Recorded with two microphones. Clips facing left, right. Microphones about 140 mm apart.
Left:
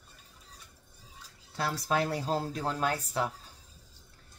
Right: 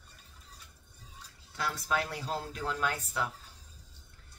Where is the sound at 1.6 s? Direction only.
35° left (ahead or behind).